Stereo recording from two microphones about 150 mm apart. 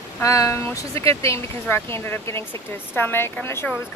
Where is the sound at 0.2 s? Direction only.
20° left (ahead or behind).